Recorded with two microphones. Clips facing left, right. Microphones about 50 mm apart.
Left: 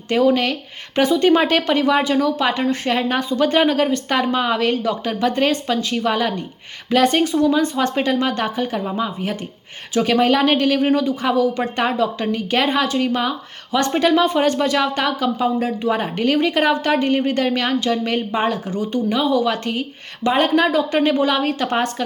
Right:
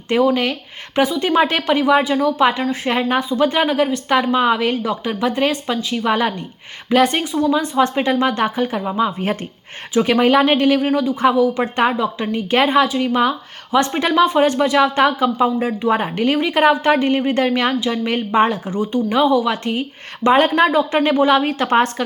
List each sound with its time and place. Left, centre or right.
0.1 s a woman's voice: centre
1.2 s a woman's voice: centre
8.0 s a woman's voice: right
8.8 s a woman's voice: centre
12.3 s a woman's voice: right
14.0 s a woman's voice: centre
18.1 s a woman's voice: right
20.2 s a woman's voice: right